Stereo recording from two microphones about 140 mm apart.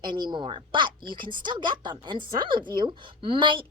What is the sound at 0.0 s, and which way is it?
A woman's voice, 30° right (ahead or behind).